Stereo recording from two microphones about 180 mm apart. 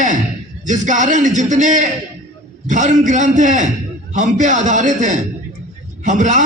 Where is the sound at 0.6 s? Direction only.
45° right (ahead or behind).